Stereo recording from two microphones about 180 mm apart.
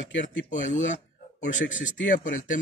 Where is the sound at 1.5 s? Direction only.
90° left.